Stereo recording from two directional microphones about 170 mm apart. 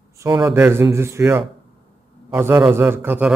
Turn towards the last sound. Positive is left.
turn(degrees=-10)  # may be behind; listen again after turning